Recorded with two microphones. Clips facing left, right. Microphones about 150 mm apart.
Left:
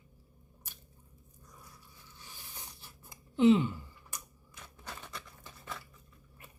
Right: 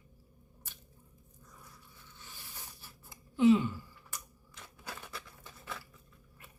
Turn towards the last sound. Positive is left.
turn(degrees=-5)  # may be behind; listen again after turning